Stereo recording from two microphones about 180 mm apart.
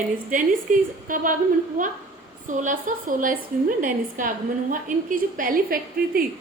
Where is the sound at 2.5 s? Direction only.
45° right (ahead or behind).